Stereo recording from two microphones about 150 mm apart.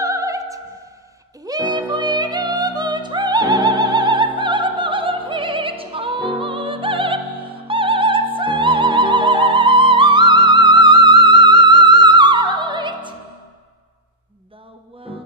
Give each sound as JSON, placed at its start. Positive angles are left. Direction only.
{"t": 0.0, "sound": "opera", "side_deg": -20}
{"t": 1.4, "sound": "music", "side_deg": -25}